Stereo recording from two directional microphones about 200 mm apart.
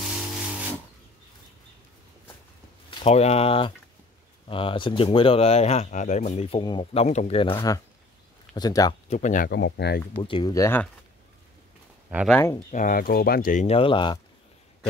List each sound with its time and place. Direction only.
3.0 s speech: 30° left (ahead or behind)
6.6 s speech: 25° left (ahead or behind)
9.1 s speech: 40° left (ahead or behind)
9.5 s speech: 60° left (ahead or behind)
10.2 s speech: 20° left (ahead or behind)
12.3 s speech: 10° left (ahead or behind)
12.7 s speech: 45° left (ahead or behind); by 14.2 s 25° left (ahead or behind)